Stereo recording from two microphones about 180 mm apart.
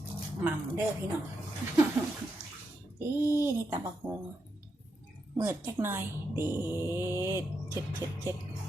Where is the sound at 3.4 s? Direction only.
15° right (ahead or behind).